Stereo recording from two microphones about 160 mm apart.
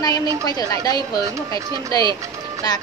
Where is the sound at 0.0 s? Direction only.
25° left (ahead or behind).